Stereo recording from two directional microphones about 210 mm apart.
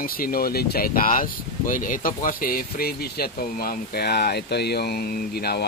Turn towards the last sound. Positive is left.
turn(degrees=50)  # may be behind; listen again after turning